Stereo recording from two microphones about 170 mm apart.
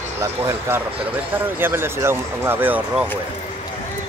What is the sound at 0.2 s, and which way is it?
Speech, 15° right (ahead or behind).